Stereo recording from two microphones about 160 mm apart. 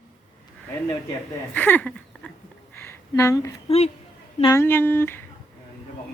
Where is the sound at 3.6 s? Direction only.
40° left (ahead or behind).